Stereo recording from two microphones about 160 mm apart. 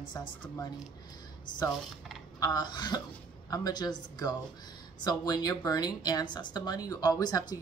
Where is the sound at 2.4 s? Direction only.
25° left (ahead or behind).